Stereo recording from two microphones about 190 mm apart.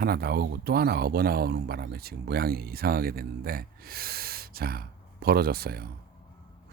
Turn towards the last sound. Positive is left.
turn(degrees=-55)  # may be behind; listen again after turning